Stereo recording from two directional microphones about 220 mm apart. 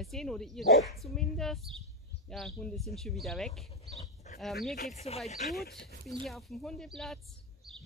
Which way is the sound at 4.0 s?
30° left (ahead or behind).